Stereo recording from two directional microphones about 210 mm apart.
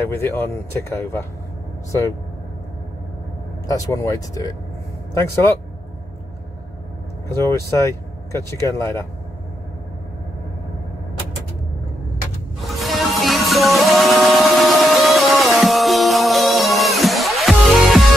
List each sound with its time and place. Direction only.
0.0 s speech: 10° left (ahead or behind)
3.6 s speech: 15° left (ahead or behind)
7.2 s speech: 15° left (ahead or behind)
12.5 s music: centre (ahead or behind)